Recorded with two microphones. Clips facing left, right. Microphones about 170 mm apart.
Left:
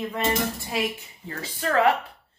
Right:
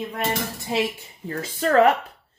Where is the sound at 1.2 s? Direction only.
40° right (ahead or behind).